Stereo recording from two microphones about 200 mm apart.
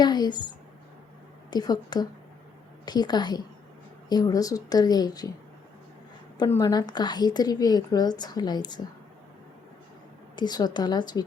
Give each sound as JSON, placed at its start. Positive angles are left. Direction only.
{"t": 0.0, "sound": "speech", "side_deg": 20}
{"t": 1.5, "sound": "a woman's voice", "side_deg": 20}
{"t": 6.3, "sound": "a woman's voice", "side_deg": 20}
{"t": 10.3, "sound": "a woman's voice", "side_deg": 20}